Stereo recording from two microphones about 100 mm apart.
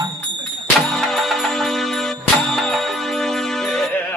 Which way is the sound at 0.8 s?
5° left (ahead or behind).